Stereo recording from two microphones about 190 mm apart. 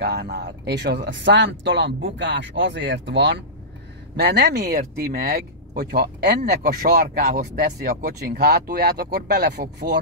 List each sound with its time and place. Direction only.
0.0 s speech: 60° right (ahead or behind)